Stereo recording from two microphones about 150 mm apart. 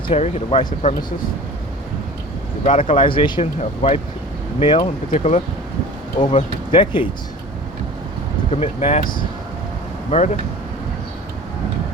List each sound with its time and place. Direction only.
0.1 s speech: 45° left (ahead or behind)
2.6 s speech: 55° left (ahead or behind)
2.9 s speech: 35° left (ahead or behind)
3.4 s speech: 45° left (ahead or behind)
4.6 s speech: 35° left (ahead or behind)
8.4 s speech: 45° left (ahead or behind)
10.1 s speech: 45° left (ahead or behind)